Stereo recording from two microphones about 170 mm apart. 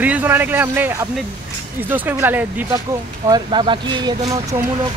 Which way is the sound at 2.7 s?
20° right (ahead or behind).